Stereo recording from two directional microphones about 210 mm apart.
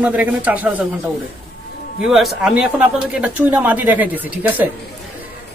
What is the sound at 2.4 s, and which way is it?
Speech, 5° right (ahead or behind).